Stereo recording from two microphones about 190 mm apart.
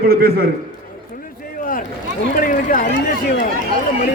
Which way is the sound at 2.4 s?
45° left (ahead or behind).